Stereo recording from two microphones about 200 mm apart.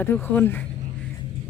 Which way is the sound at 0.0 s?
10° left (ahead or behind).